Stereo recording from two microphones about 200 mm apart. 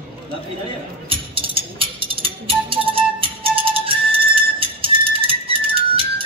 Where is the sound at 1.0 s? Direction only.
25° right (ahead or behind).